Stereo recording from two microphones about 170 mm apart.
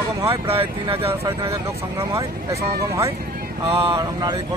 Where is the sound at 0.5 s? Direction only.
35° right (ahead or behind).